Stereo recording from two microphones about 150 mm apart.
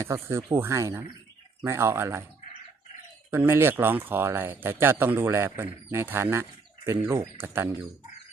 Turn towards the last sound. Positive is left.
turn(degrees=-15)  # may be behind; listen again after turning